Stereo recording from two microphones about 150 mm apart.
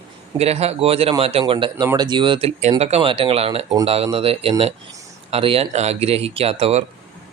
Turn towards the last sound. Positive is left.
turn(degrees=-45)  # may be behind; listen again after turning